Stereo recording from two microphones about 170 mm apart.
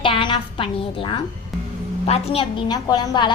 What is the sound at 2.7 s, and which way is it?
Speech, 25° left (ahead or behind).